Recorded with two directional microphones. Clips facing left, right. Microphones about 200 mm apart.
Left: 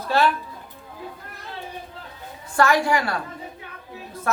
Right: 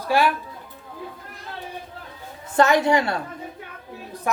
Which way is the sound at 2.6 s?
20° right (ahead or behind).